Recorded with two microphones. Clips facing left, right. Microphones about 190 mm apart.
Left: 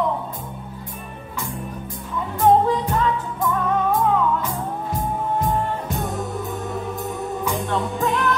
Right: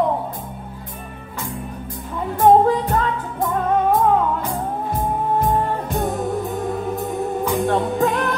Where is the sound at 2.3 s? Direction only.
50° right (ahead or behind).